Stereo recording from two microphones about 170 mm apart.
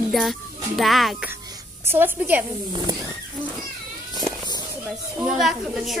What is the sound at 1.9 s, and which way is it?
Speech, 10° right (ahead or behind).